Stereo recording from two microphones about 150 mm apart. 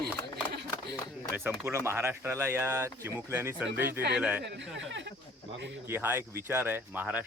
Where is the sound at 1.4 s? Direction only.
15° right (ahead or behind).